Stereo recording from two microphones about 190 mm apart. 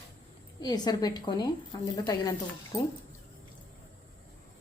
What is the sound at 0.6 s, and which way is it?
A woman's voice, 20° left (ahead or behind).